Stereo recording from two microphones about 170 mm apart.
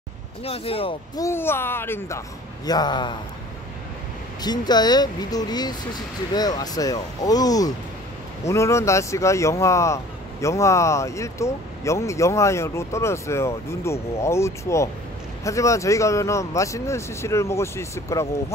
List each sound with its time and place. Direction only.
0.4 s speech: 35° left (ahead or behind)
1.1 s speech: 15° left (ahead or behind)
4.4 s speech: 25° left (ahead or behind)